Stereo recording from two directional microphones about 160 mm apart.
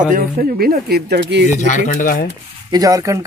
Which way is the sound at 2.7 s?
20° right (ahead or behind).